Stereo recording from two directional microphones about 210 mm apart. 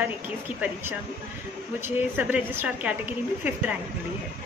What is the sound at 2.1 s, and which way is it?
A woman's voice, 10° right (ahead or behind).